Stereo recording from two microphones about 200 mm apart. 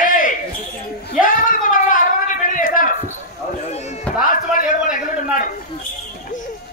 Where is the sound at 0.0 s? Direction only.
40° left (ahead or behind).